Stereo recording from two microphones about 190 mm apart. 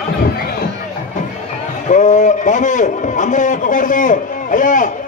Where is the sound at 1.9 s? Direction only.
40° left (ahead or behind).